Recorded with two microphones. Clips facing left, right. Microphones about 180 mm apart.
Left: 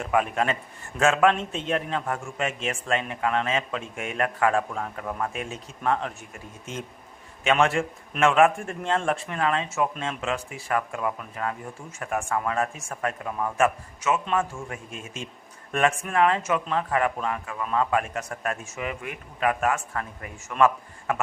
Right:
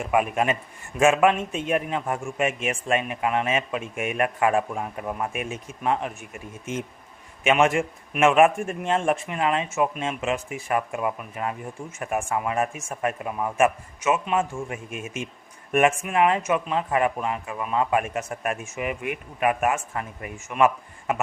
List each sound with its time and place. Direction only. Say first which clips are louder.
0.0 s a man's voice: right 2 dB; 15° right (ahead or behind)